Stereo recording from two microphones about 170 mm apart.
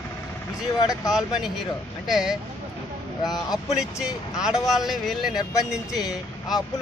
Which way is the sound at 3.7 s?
5° right (ahead or behind).